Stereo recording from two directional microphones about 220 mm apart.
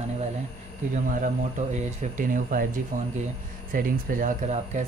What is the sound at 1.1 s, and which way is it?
Speech, 35° right (ahead or behind).